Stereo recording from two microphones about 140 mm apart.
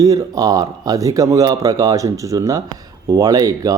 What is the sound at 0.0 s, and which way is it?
Speech, 25° right (ahead or behind).